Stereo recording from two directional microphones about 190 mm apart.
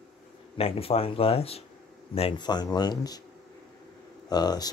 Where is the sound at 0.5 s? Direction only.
30° left (ahead or behind).